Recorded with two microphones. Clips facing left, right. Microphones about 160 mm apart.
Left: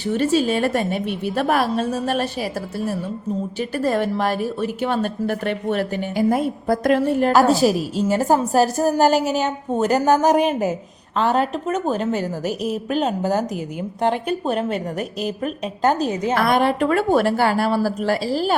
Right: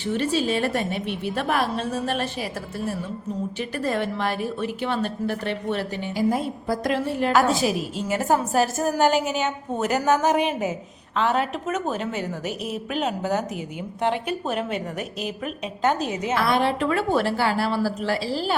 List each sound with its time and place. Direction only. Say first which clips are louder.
0.0 s a woman's voice: left 5 dB; 45° left (ahead or behind)
16.3 s a woman's voice: left 3 dB; 50° left (ahead or behind)